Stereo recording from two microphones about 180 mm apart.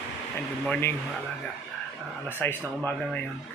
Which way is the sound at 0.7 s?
10° left (ahead or behind).